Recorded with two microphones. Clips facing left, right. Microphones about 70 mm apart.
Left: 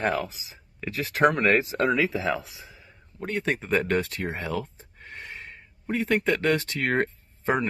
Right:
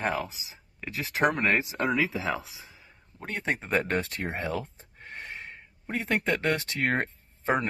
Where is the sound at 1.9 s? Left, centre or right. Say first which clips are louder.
Left 1 dB; right.